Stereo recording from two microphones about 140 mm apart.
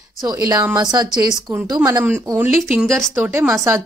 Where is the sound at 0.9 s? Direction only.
30° right (ahead or behind).